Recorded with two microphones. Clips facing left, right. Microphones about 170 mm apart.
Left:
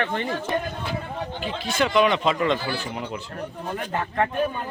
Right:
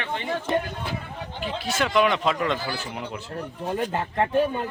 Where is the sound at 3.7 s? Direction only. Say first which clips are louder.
Even; 25° right (ahead or behind).